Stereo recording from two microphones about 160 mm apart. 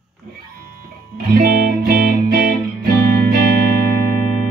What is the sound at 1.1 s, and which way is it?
Music, 65° right (ahead or behind).